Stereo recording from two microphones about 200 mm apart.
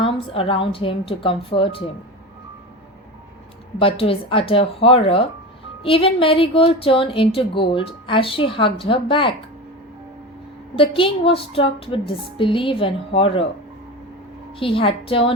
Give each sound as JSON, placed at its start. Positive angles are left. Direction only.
{"t": 0.0, "sound": "speech", "side_deg": 25}
{"t": 3.8, "sound": "speech", "side_deg": 30}
{"t": 10.8, "sound": "speech", "side_deg": 25}
{"t": 14.6, "sound": "speech", "side_deg": 25}